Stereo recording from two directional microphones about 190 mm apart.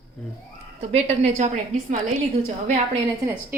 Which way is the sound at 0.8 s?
35° right (ahead or behind).